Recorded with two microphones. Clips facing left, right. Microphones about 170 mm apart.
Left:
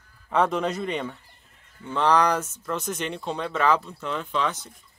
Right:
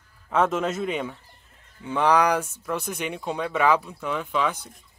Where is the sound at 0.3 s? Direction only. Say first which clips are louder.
Even; centre (ahead or behind).